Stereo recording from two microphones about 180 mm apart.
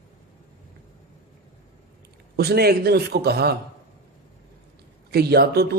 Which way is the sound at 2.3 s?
60° right (ahead or behind).